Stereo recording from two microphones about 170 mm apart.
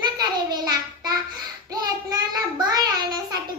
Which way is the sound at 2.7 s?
25° right (ahead or behind).